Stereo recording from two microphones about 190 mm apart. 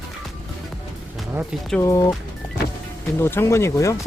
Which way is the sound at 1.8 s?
20° left (ahead or behind).